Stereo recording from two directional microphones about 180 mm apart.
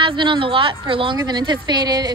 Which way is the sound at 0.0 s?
25° right (ahead or behind).